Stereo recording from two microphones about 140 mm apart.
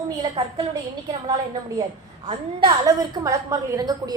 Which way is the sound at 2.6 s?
25° right (ahead or behind).